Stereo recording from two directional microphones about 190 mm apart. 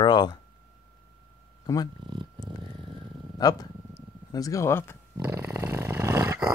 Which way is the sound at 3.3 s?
20° left (ahead or behind).